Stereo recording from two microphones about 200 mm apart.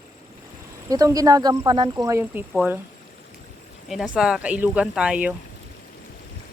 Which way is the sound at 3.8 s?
5° right (ahead or behind).